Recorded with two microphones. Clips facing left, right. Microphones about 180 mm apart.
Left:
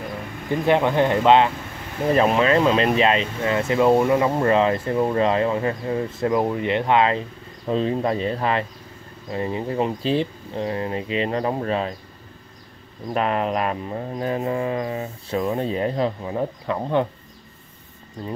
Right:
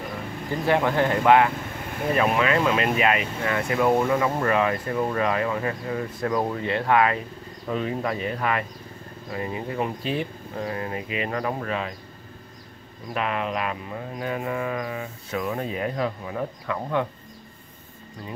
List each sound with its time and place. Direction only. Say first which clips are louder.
0.5 s speech: left 3 dB; 20° left (ahead or behind)
13.1 s speech: left 5 dB; 40° left (ahead or behind)